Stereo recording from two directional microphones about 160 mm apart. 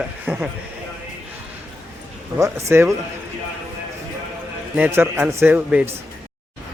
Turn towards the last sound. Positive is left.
turn(degrees=-10)  # may be behind; listen again after turning